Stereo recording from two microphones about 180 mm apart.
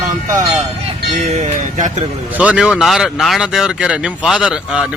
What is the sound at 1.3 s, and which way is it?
Speech, 40° right (ahead or behind).